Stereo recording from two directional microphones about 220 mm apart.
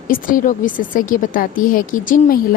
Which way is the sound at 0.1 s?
35° left (ahead or behind).